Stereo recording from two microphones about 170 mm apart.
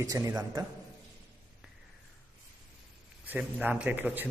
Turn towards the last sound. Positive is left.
turn(degrees=-10)  # may be behind; listen again after turning